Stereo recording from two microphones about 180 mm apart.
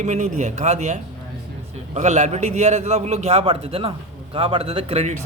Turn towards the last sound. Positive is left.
turn(degrees=-35)  # may be behind; listen again after turning